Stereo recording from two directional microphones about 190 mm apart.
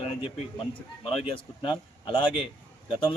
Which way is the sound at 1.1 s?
30° left (ahead or behind).